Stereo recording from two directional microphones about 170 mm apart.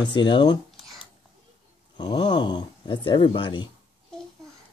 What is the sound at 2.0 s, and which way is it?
Speech, 30° left (ahead or behind).